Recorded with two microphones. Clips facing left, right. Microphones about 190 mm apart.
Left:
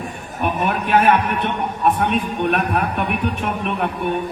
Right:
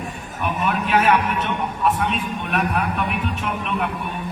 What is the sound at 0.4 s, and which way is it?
A man's voice, 55° left (ahead or behind).